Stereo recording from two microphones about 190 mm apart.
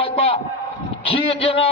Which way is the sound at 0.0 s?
30° left (ahead or behind).